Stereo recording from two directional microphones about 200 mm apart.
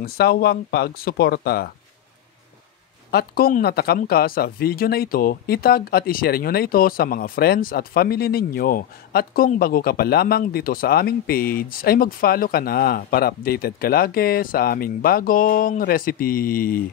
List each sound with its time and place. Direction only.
0.0 s speech: 50° left (ahead or behind)
3.1 s speech: 50° left (ahead or behind)